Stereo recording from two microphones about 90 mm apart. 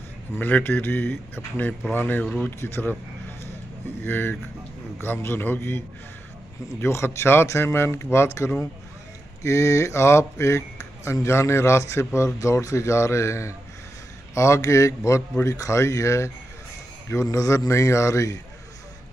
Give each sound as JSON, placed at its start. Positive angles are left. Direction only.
{"t": 0.4, "sound": "speech", "side_deg": 20}
{"t": 2.6, "sound": "speech", "side_deg": 25}
{"t": 4.0, "sound": "speech", "side_deg": 25}